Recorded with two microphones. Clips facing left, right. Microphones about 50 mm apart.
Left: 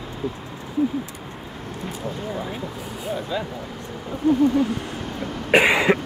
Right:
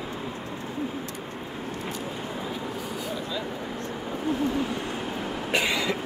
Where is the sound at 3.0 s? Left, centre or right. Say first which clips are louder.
Left 9 dB; left.